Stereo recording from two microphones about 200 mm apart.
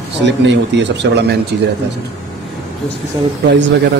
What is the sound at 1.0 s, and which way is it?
Speech, 60° right (ahead or behind).